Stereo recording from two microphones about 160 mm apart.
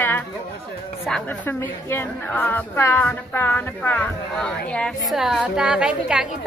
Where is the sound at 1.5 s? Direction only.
15° left (ahead or behind).